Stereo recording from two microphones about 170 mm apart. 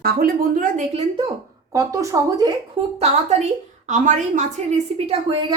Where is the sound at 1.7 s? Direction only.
20° right (ahead or behind).